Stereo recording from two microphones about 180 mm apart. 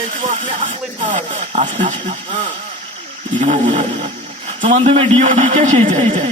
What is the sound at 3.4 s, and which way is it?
Speech, 45° right (ahead or behind).